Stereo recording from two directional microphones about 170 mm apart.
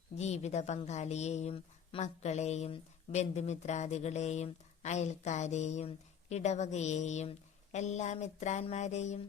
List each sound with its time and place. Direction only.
0.2 s a woman's voice: 40° left (ahead or behind)